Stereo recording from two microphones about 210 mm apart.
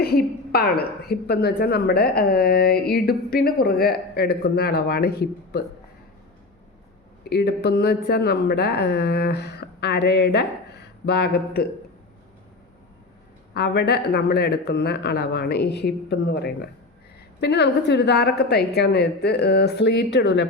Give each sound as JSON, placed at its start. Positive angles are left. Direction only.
{"t": 0.0, "sound": "a woman's voice", "side_deg": 50}
{"t": 7.3, "sound": "a woman's voice", "side_deg": 50}
{"t": 13.5, "sound": "a woman's voice", "side_deg": 50}